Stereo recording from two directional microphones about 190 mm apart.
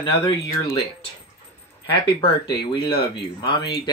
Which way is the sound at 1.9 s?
25° left (ahead or behind).